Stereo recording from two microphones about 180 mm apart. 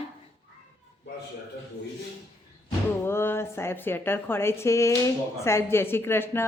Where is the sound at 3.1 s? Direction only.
15° left (ahead or behind).